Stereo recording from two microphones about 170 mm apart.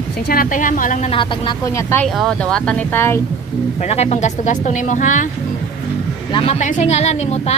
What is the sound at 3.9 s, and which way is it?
Speech, 40° left (ahead or behind).